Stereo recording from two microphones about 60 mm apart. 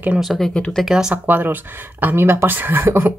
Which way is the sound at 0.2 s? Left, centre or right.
Centre.